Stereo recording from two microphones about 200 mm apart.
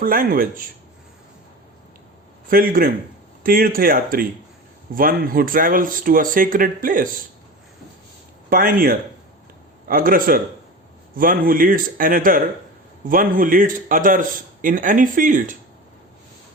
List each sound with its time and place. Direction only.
0.0 s speech: 45° right (ahead or behind)
2.5 s speech: 45° right (ahead or behind)
8.4 s speech: 45° right (ahead or behind)